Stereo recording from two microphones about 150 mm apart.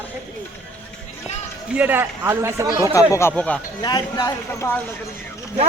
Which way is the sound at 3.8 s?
25° left (ahead or behind).